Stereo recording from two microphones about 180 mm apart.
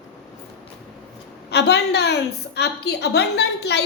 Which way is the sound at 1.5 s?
70° left (ahead or behind).